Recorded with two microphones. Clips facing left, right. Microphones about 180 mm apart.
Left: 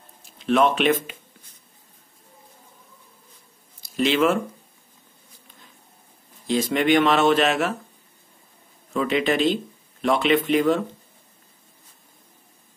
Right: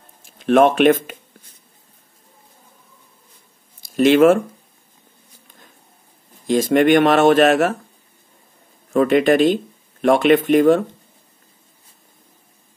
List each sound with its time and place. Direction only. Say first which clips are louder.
0.4 s speech: right 6 dB; 50° right (ahead or behind)
3.9 s speech: right 8 dB; 50° right (ahead or behind)
6.4 s speech: right 7 dB; 50° right (ahead or behind)
8.9 s speech: right 8 dB; 50° right (ahead or behind)